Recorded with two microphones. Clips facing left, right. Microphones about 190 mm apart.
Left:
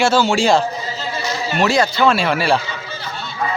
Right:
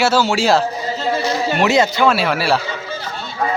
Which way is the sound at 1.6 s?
20° right (ahead or behind).